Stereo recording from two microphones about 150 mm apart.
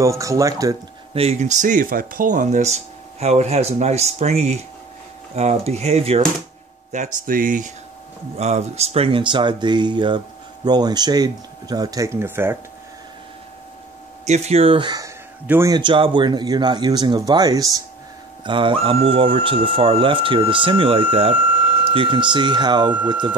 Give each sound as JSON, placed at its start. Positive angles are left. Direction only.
{"t": 0.0, "sound": "speech", "side_deg": -20}
{"t": 1.1, "sound": "speech", "side_deg": -45}
{"t": 6.9, "sound": "speech", "side_deg": -65}
{"t": 8.4, "sound": "speech", "side_deg": -45}
{"t": 14.2, "sound": "speech", "side_deg": -50}
{"t": 15.4, "sound": "speech", "side_deg": -15}
{"t": 15.7, "sound": "speech", "side_deg": -35}